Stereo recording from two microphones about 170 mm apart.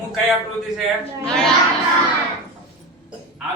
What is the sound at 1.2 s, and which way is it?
Speech, 5° left (ahead or behind).